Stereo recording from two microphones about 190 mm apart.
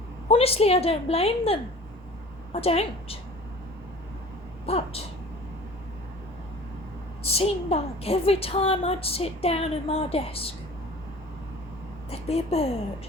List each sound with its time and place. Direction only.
0.3 s a woman's voice: 30° left (ahead or behind)
4.6 s a woman's voice: 30° left (ahead or behind)
7.2 s a woman's voice: 30° left (ahead or behind)
12.1 s a woman's voice: 35° left (ahead or behind)